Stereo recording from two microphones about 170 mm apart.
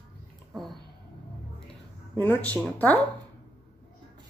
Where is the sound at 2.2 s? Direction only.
10° left (ahead or behind).